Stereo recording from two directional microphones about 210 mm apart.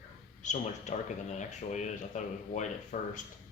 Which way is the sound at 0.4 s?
35° left (ahead or behind).